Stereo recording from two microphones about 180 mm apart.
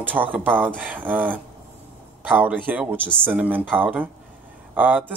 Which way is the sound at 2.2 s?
10° right (ahead or behind).